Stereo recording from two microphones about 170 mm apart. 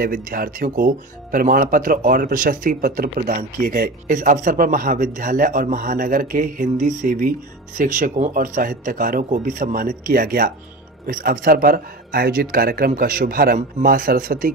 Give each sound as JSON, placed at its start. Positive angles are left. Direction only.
{"t": 0.0, "sound": "speech", "side_deg": -55}